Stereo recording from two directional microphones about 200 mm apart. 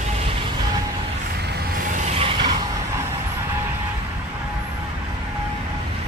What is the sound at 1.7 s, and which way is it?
Vehicle, 40° right (ahead or behind).